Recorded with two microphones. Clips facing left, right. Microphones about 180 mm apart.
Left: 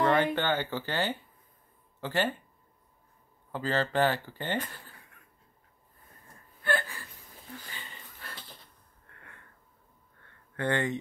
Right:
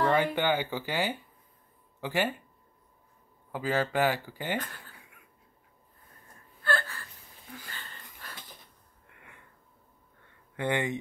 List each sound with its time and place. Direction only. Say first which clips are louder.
0.0 s speech: even; 10° right (ahead or behind)
3.5 s speech: even; 10° right (ahead or behind)
4.6 s speech: left 1 dB; 10° left (ahead or behind)
6.6 s gasp: left 1 dB; 15° left (ahead or behind)
7.6 s wheeze: even; 10° left (ahead or behind)
9.0 s a sound: even; 15° right (ahead or behind)